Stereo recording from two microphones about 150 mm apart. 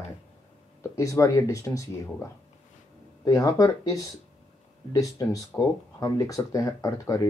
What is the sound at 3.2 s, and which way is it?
Speech, 25° left (ahead or behind).